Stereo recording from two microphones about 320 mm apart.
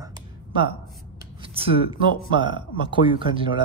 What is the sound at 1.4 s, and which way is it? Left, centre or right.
A woman's voice, centre.